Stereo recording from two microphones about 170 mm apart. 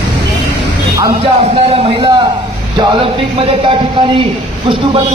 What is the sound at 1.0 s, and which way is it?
A man's voice, 35° right (ahead or behind).